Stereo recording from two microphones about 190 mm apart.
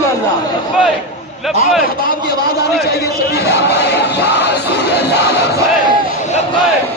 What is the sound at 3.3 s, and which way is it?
Speech, 60° left (ahead or behind).